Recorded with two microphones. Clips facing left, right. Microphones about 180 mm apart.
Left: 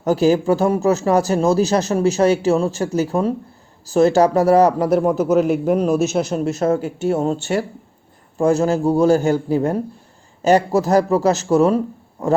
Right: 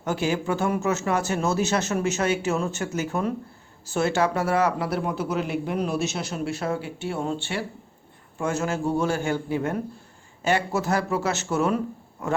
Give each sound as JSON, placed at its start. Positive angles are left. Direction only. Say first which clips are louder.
{"t": 0.0, "sound": "a man's voice", "louder": "left 10 dB", "side_deg": 35}